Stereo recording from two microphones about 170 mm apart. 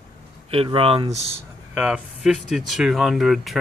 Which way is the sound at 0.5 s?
35° right (ahead or behind).